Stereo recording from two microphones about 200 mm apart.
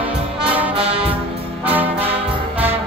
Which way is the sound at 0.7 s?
30° right (ahead or behind).